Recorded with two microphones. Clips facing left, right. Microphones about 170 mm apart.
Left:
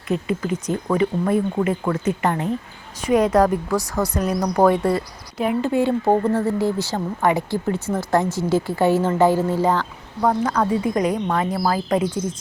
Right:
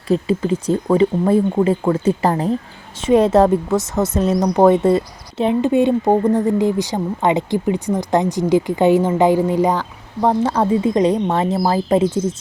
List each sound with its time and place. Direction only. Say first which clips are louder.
0.1 s speech: right 5 dB; 30° right (ahead or behind)
10.2 s speech: right 3 dB; 30° right (ahead or behind)